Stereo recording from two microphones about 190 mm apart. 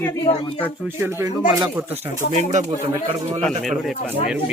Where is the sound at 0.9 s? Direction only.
10° right (ahead or behind).